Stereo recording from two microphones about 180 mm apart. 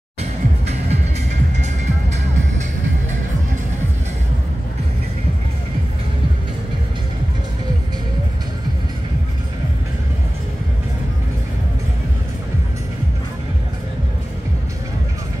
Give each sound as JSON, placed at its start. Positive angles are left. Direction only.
{"t": 0.2, "sound": "music", "side_deg": -35}